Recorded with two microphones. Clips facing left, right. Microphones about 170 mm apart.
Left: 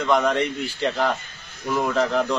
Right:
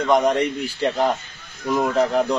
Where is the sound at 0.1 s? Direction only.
35° right (ahead or behind).